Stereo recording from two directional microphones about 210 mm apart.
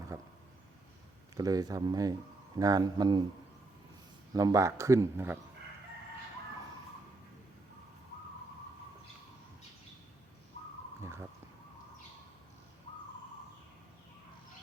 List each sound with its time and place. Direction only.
1.4 s speech: 15° right (ahead or behind)
4.4 s speech: 15° right (ahead or behind)
11.0 s a sound: 10° right (ahead or behind)